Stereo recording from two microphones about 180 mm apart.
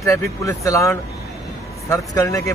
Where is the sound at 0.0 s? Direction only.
20° left (ahead or behind).